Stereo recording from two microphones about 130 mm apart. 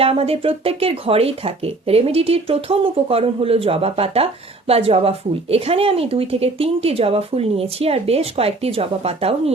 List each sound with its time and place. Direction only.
0.0 s speech: 50° right (ahead or behind)